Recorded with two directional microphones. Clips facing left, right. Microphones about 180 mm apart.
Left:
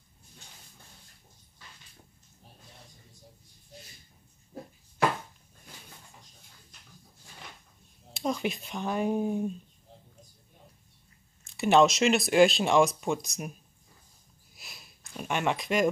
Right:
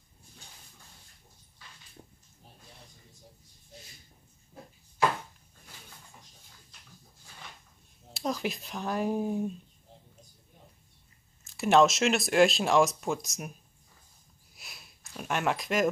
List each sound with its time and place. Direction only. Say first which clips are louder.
2.0 s a sound: right 10 dB; 20° right (ahead or behind)
8.1 s speech: left 2 dB; centre (ahead or behind)
11.4 s speech: left 1 dB; centre (ahead or behind)
14.5 s sniff: left 1 dB; centre (ahead or behind)